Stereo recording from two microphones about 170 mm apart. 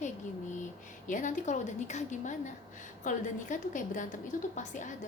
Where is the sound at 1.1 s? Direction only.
50° left (ahead or behind).